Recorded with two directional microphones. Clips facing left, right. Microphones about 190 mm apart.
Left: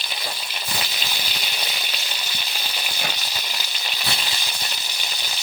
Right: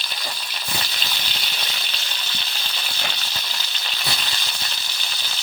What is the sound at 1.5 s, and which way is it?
Frying, 10° left (ahead or behind).